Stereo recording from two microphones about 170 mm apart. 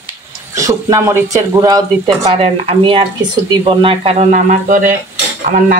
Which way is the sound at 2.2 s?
35° right (ahead or behind).